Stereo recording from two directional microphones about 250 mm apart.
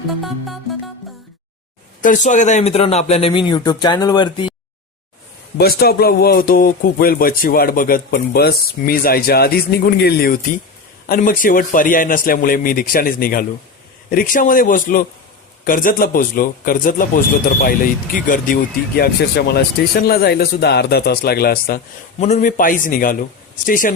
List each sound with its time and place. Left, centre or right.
2.0 s speech: left
5.5 s a man's voice: left